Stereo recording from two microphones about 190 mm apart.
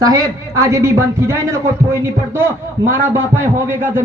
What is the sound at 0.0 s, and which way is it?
A man's voice, 15° right (ahead or behind).